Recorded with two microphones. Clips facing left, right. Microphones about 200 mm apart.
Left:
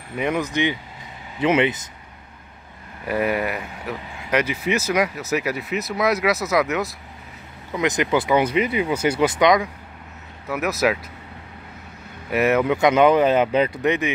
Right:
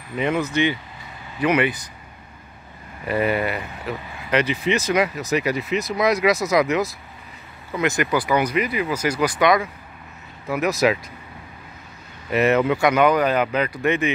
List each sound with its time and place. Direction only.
0.2 s speech: 15° left (ahead or behind)
3.1 s speech: 5° left (ahead or behind)
7.8 s speech: 20° left (ahead or behind)
10.5 s speech: 5° left (ahead or behind)
12.3 s speech: 10° left (ahead or behind)
12.7 s speech: 20° left (ahead or behind)
13.8 s speech: 15° left (ahead or behind)